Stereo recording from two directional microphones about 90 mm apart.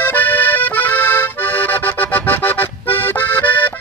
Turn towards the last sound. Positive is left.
turn(degrees=20)  # may be behind; listen again after turning